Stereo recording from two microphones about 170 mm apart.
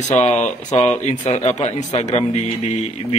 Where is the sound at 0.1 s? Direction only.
40° left (ahead or behind).